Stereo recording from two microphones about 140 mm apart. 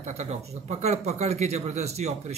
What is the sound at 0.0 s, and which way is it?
A man's voice, 55° right (ahead or behind).